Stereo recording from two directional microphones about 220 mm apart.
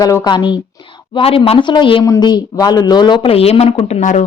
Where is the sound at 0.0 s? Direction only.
15° left (ahead or behind).